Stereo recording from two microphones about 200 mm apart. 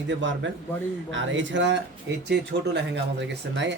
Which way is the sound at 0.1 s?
65° right (ahead or behind).